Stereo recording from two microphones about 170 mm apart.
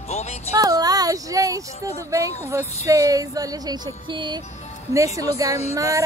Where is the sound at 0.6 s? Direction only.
20° right (ahead or behind).